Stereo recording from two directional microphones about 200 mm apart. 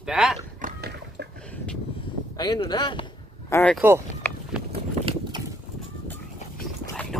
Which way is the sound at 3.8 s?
10° right (ahead or behind).